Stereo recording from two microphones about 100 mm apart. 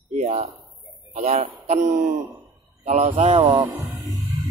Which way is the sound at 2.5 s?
85° right.